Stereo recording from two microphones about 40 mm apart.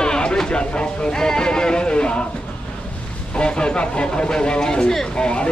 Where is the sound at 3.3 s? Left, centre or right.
Left.